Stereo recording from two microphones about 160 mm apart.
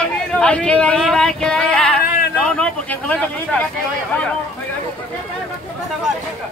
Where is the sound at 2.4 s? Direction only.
5° left (ahead or behind).